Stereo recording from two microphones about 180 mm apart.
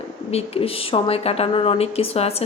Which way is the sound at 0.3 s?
35° left (ahead or behind).